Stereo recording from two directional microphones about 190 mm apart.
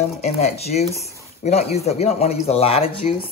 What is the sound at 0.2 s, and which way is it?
Speech, 35° left (ahead or behind).